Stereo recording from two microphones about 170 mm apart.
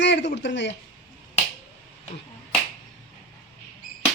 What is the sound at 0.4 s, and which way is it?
Speech, 90° left.